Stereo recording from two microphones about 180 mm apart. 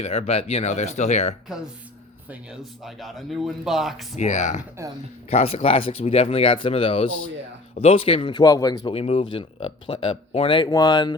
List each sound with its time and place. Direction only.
0.0 s speech: 35° left (ahead or behind)
2.5 s speech: centre (ahead or behind)
4.2 s a man's voice: 40° left (ahead or behind); by 11.2 s 25° left (ahead or behind)